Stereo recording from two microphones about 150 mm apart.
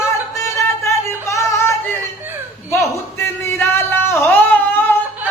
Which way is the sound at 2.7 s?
15° left (ahead or behind).